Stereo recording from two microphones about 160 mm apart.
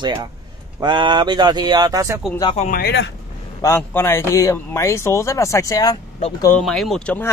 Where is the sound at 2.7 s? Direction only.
75° left (ahead or behind).